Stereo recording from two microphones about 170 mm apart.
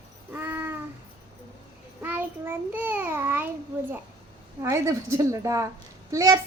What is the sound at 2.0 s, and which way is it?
A woman's voice, 10° right (ahead or behind).